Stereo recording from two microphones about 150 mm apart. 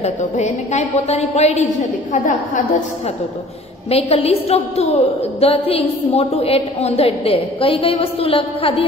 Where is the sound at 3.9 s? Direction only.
40° left (ahead or behind).